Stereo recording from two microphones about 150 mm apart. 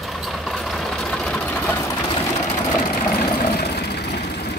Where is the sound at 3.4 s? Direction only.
90° left.